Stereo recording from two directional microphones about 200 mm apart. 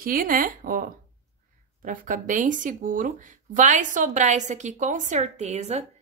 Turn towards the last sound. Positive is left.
turn(degrees=-35)  # may be behind; listen again after turning